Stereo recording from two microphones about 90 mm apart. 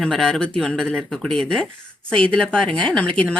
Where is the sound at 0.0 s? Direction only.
10° left (ahead or behind).